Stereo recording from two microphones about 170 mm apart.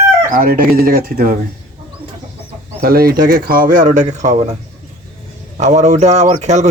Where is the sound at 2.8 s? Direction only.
60° right (ahead or behind); by 4.6 s 40° right (ahead or behind).